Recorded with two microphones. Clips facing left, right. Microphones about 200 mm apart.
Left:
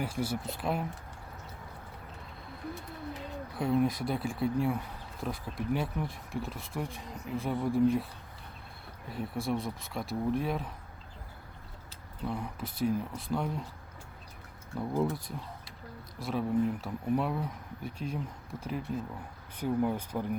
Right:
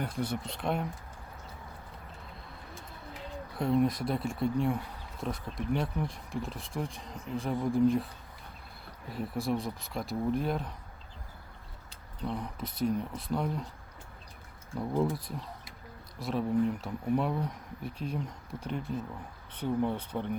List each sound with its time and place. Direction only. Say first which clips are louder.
0.0 s speech: left 1 dB; 5° left (ahead or behind)
3.6 s speech: right 1 dB; centre (ahead or behind)
9.0 s speech: right 1 dB; centre (ahead or behind)
12.2 s speech: even; centre (ahead or behind)
14.8 s speech: right 1 dB; centre (ahead or behind)